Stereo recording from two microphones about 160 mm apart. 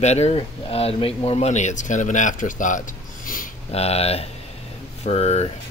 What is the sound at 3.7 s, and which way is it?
Speech, 40° left (ahead or behind).